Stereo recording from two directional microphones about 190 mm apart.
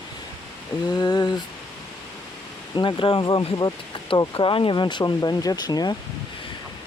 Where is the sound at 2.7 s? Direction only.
25° left (ahead or behind).